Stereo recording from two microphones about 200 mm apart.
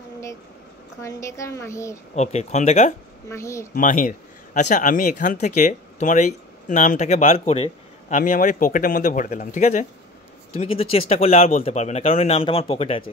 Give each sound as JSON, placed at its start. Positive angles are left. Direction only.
{"t": 1.0, "sound": "speech", "side_deg": 15}
{"t": 2.1, "sound": "speech", "side_deg": 35}
{"t": 3.3, "sound": "speech", "side_deg": 15}
{"t": 3.7, "sound": "speech", "side_deg": 40}
{"t": 8.2, "sound": "speech", "side_deg": 40}